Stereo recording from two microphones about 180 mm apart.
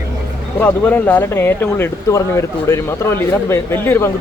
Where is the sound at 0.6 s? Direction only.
10° left (ahead or behind).